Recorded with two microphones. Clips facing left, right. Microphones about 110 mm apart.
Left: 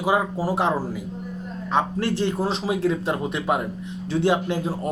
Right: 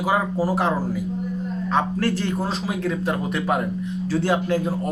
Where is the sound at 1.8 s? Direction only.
25° left (ahead or behind).